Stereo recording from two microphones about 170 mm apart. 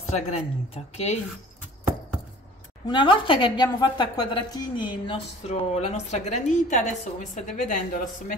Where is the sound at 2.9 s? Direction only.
30° left (ahead or behind); by 7.8 s 50° left (ahead or behind).